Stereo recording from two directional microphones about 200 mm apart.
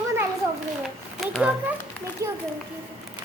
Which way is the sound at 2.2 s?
15° right (ahead or behind).